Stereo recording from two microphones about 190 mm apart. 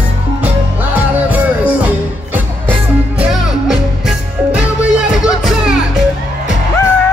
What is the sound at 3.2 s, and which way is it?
Music, centre (ahead or behind).